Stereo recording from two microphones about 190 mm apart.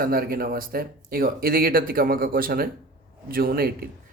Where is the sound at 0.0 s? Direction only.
50° right (ahead or behind).